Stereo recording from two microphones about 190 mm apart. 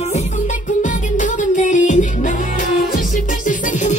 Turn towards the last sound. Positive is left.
turn(degrees=40)  # may be behind; listen again after turning